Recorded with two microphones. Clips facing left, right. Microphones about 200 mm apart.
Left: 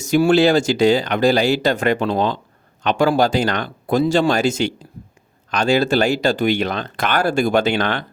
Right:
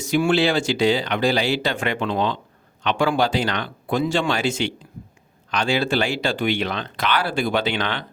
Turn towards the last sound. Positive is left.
turn(degrees=50)  # may be behind; listen again after turning